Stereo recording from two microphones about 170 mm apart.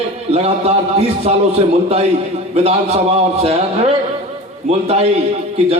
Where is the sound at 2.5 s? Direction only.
40° right (ahead or behind).